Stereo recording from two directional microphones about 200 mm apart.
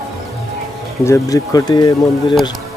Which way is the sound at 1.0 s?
15° left (ahead or behind).